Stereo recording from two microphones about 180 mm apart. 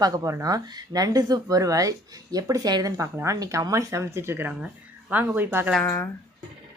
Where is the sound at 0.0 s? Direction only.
20° right (ahead or behind).